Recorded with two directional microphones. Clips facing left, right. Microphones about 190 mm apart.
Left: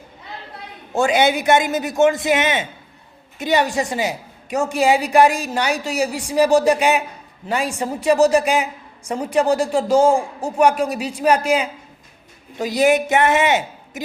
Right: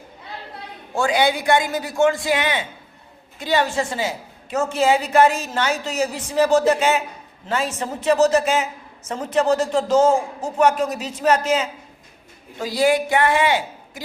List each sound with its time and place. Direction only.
0.9 s a man's voice: 20° left (ahead or behind)